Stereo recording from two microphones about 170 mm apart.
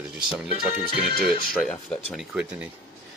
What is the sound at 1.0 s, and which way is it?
Speech, 70° right (ahead or behind).